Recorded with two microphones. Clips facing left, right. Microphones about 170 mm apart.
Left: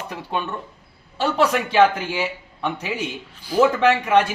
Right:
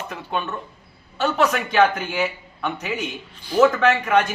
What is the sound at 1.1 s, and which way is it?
Speech, 30° left (ahead or behind).